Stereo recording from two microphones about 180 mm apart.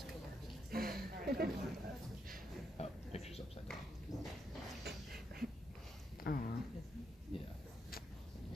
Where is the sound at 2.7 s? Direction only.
35° left (ahead or behind).